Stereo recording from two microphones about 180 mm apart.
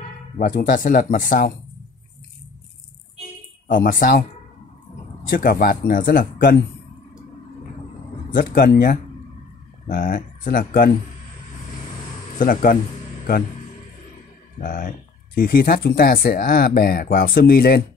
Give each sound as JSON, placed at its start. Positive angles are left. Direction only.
{"t": 0.6, "sound": "speech", "side_deg": 50}
{"t": 3.6, "sound": "speech", "side_deg": 50}
{"t": 5.3, "sound": "speech", "side_deg": 55}
{"t": 8.4, "sound": "speech", "side_deg": 55}
{"t": 12.4, "sound": "speech", "side_deg": 50}
{"t": 14.6, "sound": "speech", "side_deg": 50}